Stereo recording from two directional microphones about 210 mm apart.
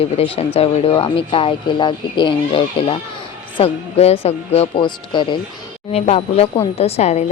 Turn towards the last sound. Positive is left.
turn(degrees=30)  # may be behind; listen again after turning